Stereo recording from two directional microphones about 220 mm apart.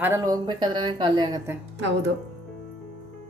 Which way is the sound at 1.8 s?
55° right (ahead or behind).